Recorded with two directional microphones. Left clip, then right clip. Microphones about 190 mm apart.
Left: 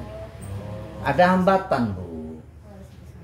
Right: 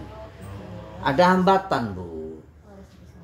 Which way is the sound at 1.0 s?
50° right (ahead or behind).